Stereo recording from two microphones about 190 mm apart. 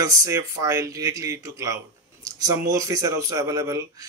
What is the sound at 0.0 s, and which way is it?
A man's voice, 15° right (ahead or behind).